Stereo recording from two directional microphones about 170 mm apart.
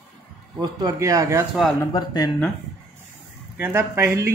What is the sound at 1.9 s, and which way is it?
Speech, 25° left (ahead or behind).